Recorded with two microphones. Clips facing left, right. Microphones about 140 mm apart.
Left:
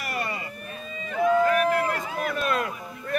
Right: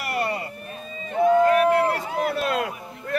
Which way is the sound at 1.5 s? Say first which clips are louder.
Right 4 dB; 30° right (ahead or behind).